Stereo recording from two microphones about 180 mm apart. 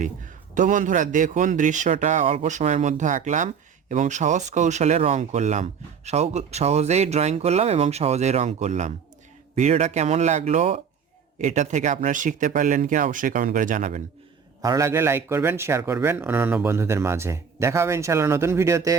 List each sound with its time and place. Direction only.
0.0 s a man's voice: 45° right (ahead or behind)
14.6 s a man's voice: 20° right (ahead or behind)